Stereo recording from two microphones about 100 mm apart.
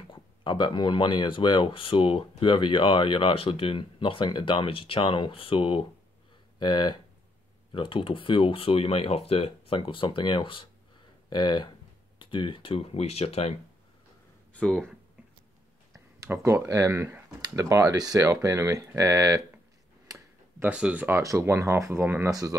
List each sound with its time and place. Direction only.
0.1 s speech: 50° left (ahead or behind)
6.6 s speech: 50° left (ahead or behind)
7.7 s speech: 60° left (ahead or behind); by 13.6 s 90° left
14.5 s speech: 10° left (ahead or behind)
16.3 s speech: 25° right (ahead or behind)
20.6 s speech: 15° right (ahead or behind)
21.2 s speech: 30° right (ahead or behind)
22.3 s speech: 35° right (ahead or behind)